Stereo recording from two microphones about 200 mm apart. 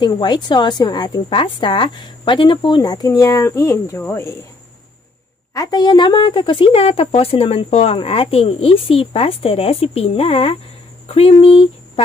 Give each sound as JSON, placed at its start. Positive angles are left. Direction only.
{"t": 0.0, "sound": "a woman's voice", "side_deg": 20}
{"t": 5.5, "sound": "a woman's voice", "side_deg": 20}